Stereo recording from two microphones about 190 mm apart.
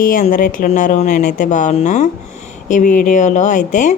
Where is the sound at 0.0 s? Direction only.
45° left (ahead or behind).